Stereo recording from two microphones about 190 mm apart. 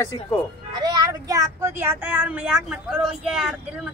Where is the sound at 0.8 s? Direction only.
20° right (ahead or behind); by 3.9 s 5° right (ahead or behind).